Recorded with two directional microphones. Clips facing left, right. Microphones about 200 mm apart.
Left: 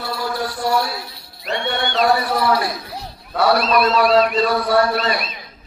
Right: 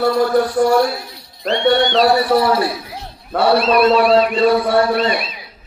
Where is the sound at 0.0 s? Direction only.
50° right (ahead or behind).